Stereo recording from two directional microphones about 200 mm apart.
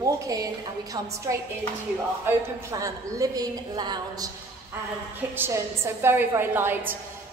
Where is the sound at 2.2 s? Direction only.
15° right (ahead or behind).